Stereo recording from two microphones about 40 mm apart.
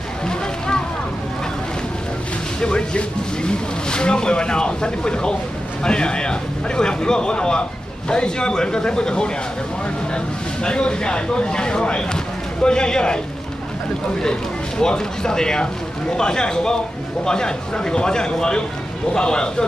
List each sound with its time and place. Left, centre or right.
0.3 s a sound: centre
2.6 s speech: left
14.2 s speech: centre